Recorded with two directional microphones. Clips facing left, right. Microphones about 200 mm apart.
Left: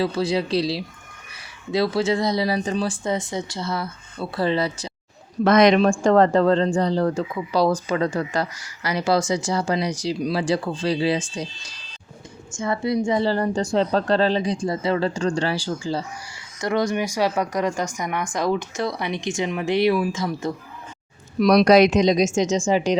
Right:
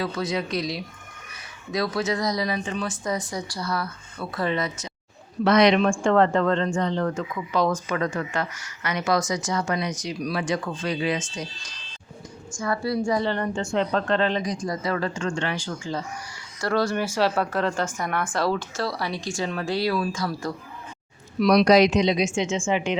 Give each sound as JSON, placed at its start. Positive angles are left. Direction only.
{"t": 0.0, "sound": "speech", "side_deg": 30}
{"t": 5.4, "sound": "a woman's voice", "side_deg": 45}
{"t": 12.5, "sound": "speech", "side_deg": 25}
{"t": 16.6, "sound": "speech", "side_deg": 20}
{"t": 21.3, "sound": "a woman's voice", "side_deg": 45}